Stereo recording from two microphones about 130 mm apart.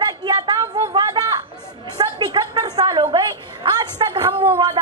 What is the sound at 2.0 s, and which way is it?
A man's voice, 30° right (ahead or behind).